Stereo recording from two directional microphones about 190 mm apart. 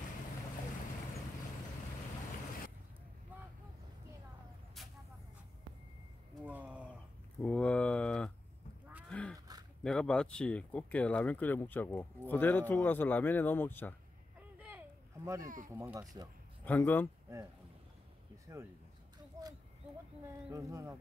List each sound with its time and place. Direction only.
4.8 s vehicle: centre (ahead or behind)
6.4 s a sound: 10° right (ahead or behind)
7.3 s a sound: 5° left (ahead or behind)
9.1 s roaring cats: 5° left (ahead or behind)
9.8 s speech: 5° left (ahead or behind)
14.6 s a sound: 10° right (ahead or behind)
15.4 s speech: 45° right (ahead or behind)
15.7 s speech: 10° right (ahead or behind)
16.6 s speech: 10° left (ahead or behind)
18.5 s speech: 15° right (ahead or behind)
20.5 s speech: 15° right (ahead or behind)